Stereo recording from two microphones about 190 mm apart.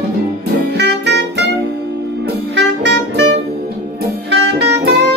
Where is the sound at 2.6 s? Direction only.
65° right (ahead or behind).